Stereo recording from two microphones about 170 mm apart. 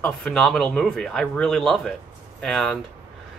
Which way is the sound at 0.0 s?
5° left (ahead or behind).